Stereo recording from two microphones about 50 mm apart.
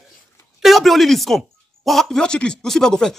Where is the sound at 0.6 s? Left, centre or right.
Centre.